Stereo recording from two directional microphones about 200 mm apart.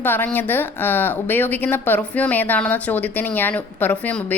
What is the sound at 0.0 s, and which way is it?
A woman's voice, 10° left (ahead or behind).